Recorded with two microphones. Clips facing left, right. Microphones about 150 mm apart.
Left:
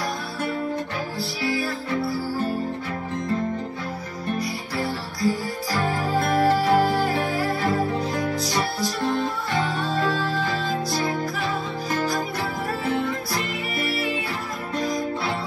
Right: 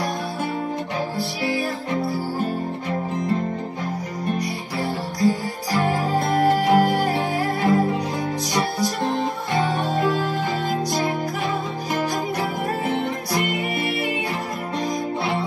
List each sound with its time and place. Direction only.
1.4 s music: 20° right (ahead or behind)
4.7 s music: 20° right (ahead or behind)
14.8 s music: 20° right (ahead or behind)